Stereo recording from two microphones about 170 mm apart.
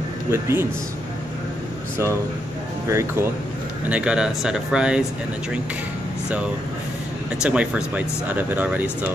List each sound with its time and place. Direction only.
0.3 s speech: 15° right (ahead or behind)
2.9 s speech: 15° right (ahead or behind)
3.9 s speech: 5° right (ahead or behind)
7.4 s speech: 5° right (ahead or behind)